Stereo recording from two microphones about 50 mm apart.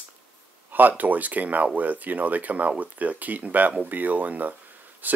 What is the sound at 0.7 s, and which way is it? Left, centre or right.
Speech, right.